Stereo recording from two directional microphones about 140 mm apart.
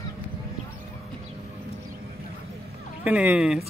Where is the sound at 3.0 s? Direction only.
10° right (ahead or behind).